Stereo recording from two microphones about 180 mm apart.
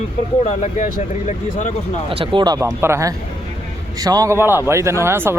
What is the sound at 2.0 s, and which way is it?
Speech, 30° right (ahead or behind).